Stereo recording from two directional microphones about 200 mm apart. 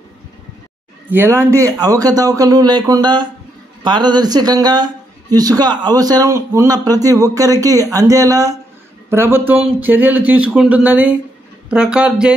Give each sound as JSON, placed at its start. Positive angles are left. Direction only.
{"t": 1.1, "sound": "speech", "side_deg": -10}